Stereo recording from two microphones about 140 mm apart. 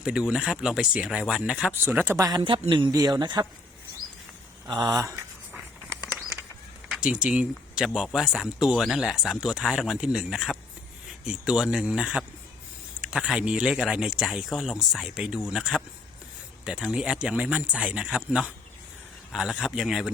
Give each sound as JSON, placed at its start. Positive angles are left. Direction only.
{"t": 0.0, "sound": "speech", "side_deg": -5}
{"t": 2.4, "sound": "speech", "side_deg": -35}
{"t": 4.7, "sound": "speech", "side_deg": -30}
{"t": 6.9, "sound": "speech", "side_deg": -5}